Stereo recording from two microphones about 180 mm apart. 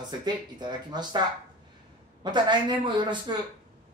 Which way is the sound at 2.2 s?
25° right (ahead or behind).